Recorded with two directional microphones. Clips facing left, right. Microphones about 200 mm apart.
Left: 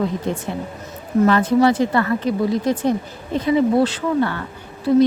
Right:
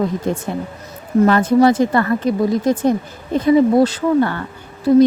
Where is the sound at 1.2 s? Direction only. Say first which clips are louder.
Right 3 dB; 45° right (ahead or behind).